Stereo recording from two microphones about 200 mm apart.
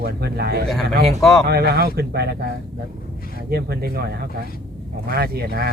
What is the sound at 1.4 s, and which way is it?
A man's voice, 50° right (ahead or behind).